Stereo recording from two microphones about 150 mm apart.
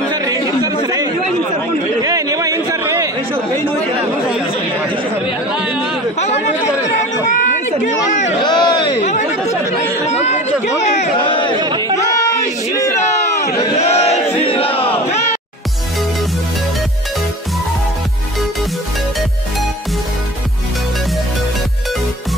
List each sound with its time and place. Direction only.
0.1 s chatter: 25° right (ahead or behind)
5.5 s speech: 5° right (ahead or behind)
7.0 s a sound: 55° left (ahead or behind)
8.1 s a man's voice: 50° left (ahead or behind)
8.5 s a sound: 30° left (ahead or behind)
10.0 s chatter: 50° left (ahead or behind)
11.2 s crowd: 35° left (ahead or behind)
12.7 s a sound: 20° left (ahead or behind)
13.7 s battle cry: 45° left (ahead or behind)